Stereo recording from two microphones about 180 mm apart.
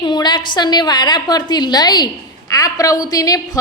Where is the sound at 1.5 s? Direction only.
25° left (ahead or behind).